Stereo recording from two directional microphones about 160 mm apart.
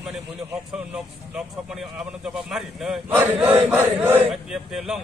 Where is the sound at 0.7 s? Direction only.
5° right (ahead or behind).